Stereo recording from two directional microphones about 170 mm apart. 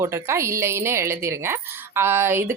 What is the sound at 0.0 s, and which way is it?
Speech, 15° right (ahead or behind).